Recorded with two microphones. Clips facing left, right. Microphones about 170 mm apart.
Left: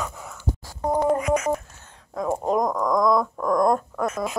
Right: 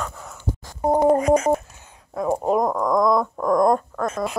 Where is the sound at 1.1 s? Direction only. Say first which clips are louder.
Right 5 dB; 35° right (ahead or behind).